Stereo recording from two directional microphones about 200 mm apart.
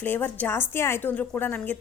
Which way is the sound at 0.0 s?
10° left (ahead or behind).